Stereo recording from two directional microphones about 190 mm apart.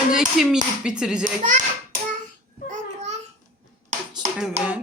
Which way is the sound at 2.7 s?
40° right (ahead or behind).